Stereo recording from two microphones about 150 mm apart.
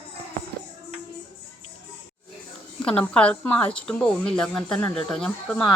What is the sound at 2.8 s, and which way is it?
Speech, 5° left (ahead or behind).